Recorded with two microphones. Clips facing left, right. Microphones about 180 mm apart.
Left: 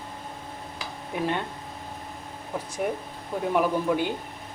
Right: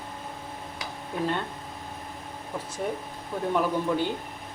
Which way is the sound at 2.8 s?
10° left (ahead or behind).